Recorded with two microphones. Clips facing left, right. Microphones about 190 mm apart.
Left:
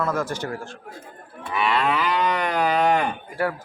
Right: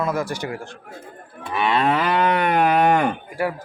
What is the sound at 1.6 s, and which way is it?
Moo, 40° right (ahead or behind).